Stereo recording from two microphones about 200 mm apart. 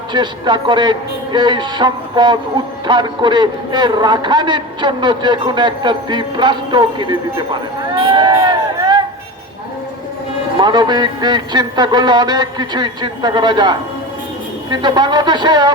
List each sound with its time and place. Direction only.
0.1 s a man's voice: 20° right (ahead or behind)
7.9 s a sound: 25° right (ahead or behind)
10.6 s a man's voice: 20° right (ahead or behind)